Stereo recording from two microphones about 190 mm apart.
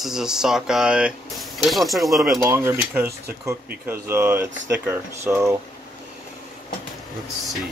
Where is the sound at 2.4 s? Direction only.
15° right (ahead or behind).